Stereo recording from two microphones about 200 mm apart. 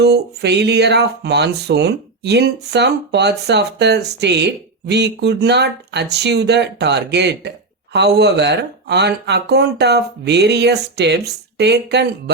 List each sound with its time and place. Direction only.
0.0 s speech: 55° right (ahead or behind)